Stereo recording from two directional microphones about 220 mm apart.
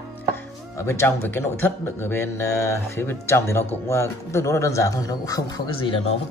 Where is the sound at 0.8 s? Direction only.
10° left (ahead or behind).